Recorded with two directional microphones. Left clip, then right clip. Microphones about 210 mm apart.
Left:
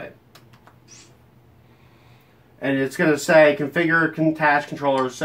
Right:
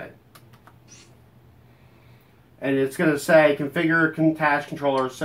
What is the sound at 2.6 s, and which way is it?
Speech, 15° left (ahead or behind).